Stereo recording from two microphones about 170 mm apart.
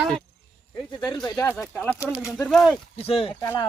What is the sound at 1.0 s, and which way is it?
Speech, 25° left (ahead or behind).